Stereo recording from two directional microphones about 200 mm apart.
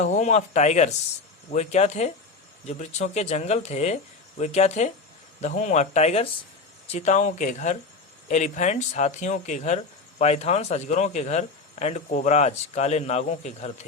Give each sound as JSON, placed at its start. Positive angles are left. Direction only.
{"t": 0.0, "sound": "speech", "side_deg": 35}